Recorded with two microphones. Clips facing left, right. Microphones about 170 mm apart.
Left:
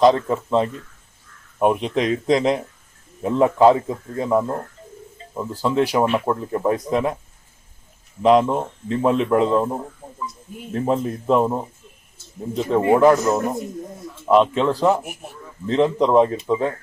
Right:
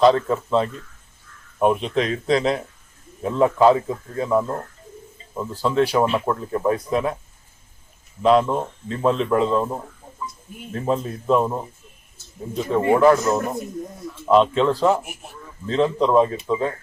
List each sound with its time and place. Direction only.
0.0 s a man's voice: 15° left (ahead or behind)
5.6 s speech: 15° left (ahead or behind)
8.2 s a man's voice: 15° left (ahead or behind)
10.0 s a sound: 70° left (ahead or behind)
10.8 s a man's voice: 15° left (ahead or behind)